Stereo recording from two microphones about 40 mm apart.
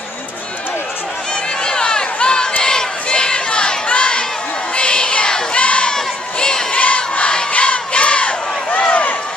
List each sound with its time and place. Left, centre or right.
1.3 s a sound: centre
2.6 s crowd: centre
4.7 s a sound: left
5.9 s crowd: centre
6.7 s crowd: left
7.0 s crowd: left